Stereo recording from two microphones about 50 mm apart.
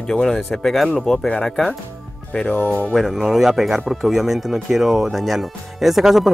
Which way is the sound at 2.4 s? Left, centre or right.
Left.